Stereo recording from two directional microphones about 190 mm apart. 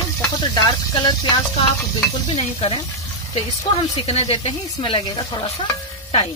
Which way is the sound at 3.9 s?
35° left (ahead or behind).